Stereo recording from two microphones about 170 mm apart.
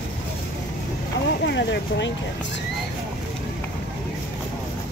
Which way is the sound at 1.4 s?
90° left.